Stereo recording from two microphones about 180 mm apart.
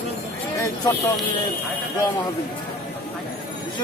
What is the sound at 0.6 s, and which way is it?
Speech, 20° left (ahead or behind).